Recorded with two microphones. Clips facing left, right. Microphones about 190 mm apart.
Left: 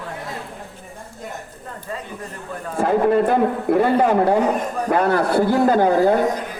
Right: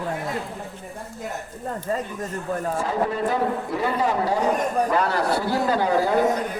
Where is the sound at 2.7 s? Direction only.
55° left (ahead or behind).